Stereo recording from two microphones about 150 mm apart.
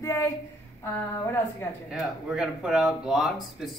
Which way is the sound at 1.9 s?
5° right (ahead or behind).